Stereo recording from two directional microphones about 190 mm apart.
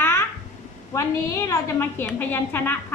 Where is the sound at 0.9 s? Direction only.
15° left (ahead or behind).